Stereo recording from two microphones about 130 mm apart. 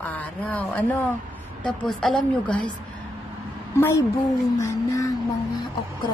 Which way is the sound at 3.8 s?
20° left (ahead or behind).